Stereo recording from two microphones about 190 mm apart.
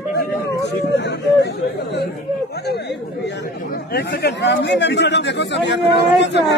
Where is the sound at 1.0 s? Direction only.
60° left (ahead or behind).